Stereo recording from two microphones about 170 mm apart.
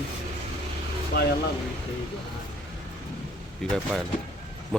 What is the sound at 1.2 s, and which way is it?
Speech, 70° left (ahead or behind).